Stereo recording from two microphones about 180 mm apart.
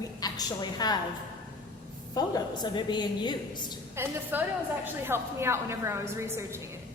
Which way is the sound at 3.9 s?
10° right (ahead or behind).